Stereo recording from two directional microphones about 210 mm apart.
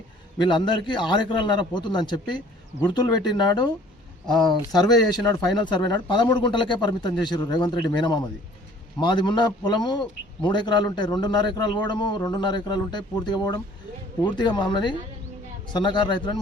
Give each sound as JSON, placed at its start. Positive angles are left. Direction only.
{"t": 0.3, "sound": "a man's voice", "side_deg": 20}